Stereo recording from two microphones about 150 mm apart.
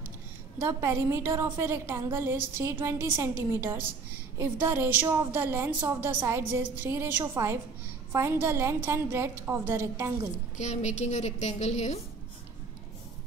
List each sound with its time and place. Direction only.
0.6 s a woman's voice: 20° right (ahead or behind)
10.6 s a woman's voice: 50° left (ahead or behind)